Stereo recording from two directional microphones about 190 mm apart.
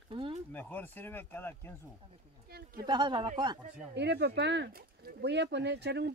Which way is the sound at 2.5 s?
55° right (ahead or behind).